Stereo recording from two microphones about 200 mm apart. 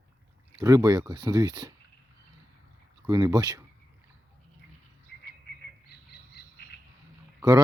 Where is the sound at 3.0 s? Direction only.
15° right (ahead or behind).